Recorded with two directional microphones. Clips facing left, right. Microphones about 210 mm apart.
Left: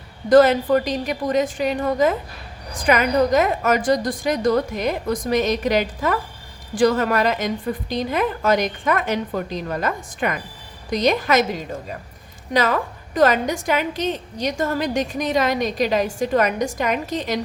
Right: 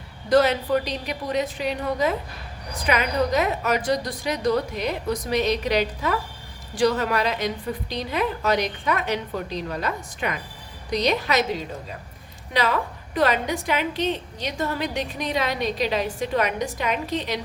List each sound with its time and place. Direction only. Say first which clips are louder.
0.3 s a woman's voice: left 6 dB; 50° left (ahead or behind)